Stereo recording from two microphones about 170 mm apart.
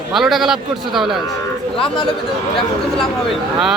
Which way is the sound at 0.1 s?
Centre (ahead or behind).